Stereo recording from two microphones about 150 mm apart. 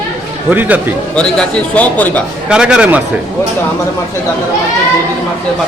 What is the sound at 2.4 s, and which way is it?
Speech, 5° right (ahead or behind).